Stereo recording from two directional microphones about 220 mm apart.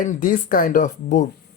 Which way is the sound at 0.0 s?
35° left (ahead or behind).